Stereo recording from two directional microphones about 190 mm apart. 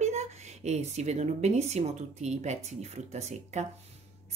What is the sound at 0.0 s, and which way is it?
Speech, 35° right (ahead or behind).